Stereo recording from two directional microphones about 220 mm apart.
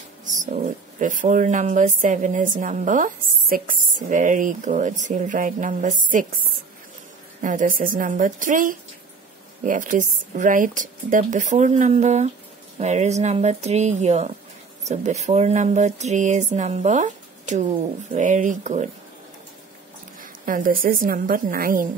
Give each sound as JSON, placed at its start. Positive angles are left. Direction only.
{"t": 0.2, "sound": "speech", "side_deg": -35}
{"t": 7.4, "sound": "speech", "side_deg": -35}
{"t": 20.2, "sound": "a woman's voice", "side_deg": -40}